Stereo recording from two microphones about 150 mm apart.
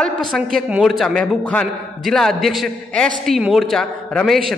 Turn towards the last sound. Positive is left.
turn(degrees=5)  # may be behind; listen again after turning